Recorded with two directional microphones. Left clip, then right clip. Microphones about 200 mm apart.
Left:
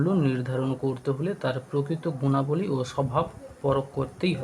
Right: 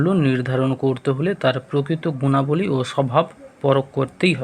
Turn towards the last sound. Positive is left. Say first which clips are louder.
# right 9 dB
turn(degrees=-20)  # may be behind; listen again after turning